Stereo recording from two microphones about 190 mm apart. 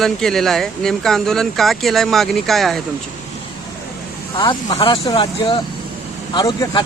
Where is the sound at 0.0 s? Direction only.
Centre (ahead or behind).